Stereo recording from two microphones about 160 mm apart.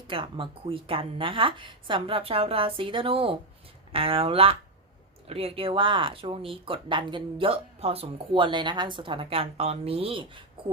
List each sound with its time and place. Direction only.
0.1 s speech: 35° right (ahead or behind)